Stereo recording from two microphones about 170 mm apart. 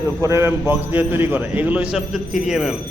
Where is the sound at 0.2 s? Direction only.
15° right (ahead or behind).